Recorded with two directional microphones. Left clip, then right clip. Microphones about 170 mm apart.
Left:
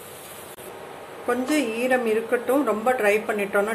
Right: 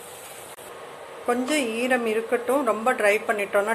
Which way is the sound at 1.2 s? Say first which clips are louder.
Even; 15° right (ahead or behind).